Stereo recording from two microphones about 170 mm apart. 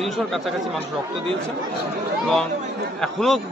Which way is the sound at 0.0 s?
Centre (ahead or behind).